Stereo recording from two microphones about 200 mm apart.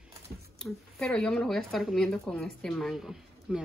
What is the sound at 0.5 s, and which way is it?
Speech, centre (ahead or behind).